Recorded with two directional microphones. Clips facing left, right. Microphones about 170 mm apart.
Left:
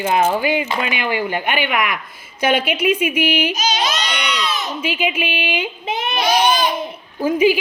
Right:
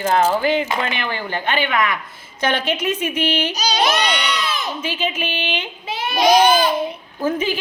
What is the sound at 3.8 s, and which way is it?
Baby cry, 60° right (ahead or behind).